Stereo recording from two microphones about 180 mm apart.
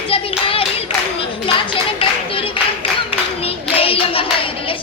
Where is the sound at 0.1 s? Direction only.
30° left (ahead or behind).